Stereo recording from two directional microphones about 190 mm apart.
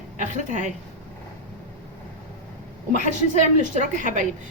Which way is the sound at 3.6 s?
40° right (ahead or behind).